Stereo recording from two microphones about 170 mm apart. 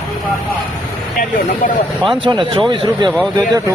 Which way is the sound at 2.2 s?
30° right (ahead or behind).